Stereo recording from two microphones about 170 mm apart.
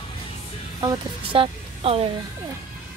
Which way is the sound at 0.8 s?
25° right (ahead or behind).